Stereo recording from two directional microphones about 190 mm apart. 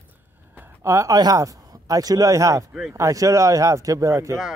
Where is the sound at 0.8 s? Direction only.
15° right (ahead or behind).